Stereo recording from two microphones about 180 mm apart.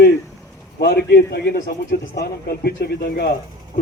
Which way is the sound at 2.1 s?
60° left (ahead or behind).